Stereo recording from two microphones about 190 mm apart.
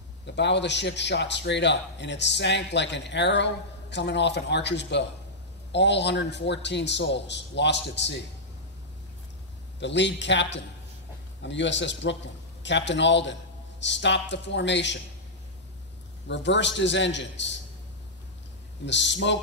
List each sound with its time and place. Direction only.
0.4 s a man's voice: 65° left (ahead or behind)
9.8 s a man's voice: 70° left (ahead or behind)
16.3 s a man's voice: 70° left (ahead or behind)
18.9 s a man's voice: 70° left (ahead or behind)